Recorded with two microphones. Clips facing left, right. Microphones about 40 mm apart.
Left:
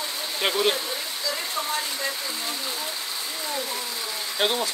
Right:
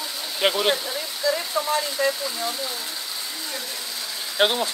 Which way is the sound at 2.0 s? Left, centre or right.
Right.